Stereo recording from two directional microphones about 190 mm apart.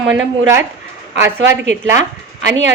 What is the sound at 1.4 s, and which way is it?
Speech, 75° right (ahead or behind).